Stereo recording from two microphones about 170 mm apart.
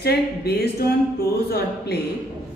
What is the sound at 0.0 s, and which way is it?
Speech, 70° left (ahead or behind).